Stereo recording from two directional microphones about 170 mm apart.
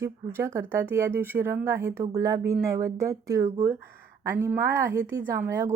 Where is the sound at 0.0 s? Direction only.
15° right (ahead or behind).